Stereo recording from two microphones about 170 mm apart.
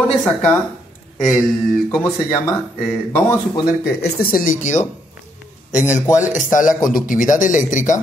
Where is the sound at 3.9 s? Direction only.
65° left (ahead or behind); by 4.8 s 50° left (ahead or behind).